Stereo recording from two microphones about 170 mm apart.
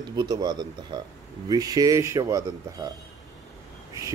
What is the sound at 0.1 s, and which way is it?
Speech, 25° right (ahead or behind).